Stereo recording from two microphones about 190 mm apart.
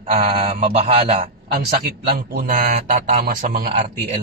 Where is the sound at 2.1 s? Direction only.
50° right (ahead or behind).